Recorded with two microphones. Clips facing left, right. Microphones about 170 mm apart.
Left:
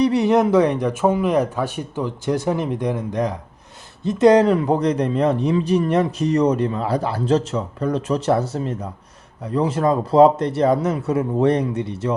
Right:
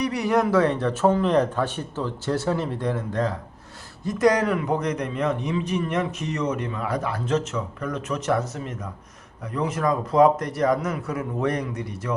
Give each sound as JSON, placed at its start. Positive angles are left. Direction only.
{"t": 0.0, "sound": "a man's voice", "side_deg": 25}